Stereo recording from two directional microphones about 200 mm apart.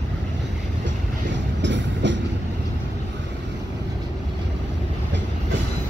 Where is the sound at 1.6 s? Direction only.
65° right (ahead or behind).